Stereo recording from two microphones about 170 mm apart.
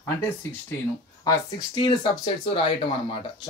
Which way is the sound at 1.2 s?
25° left (ahead or behind).